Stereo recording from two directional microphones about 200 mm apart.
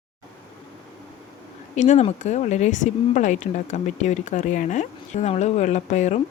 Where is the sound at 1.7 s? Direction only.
35° left (ahead or behind).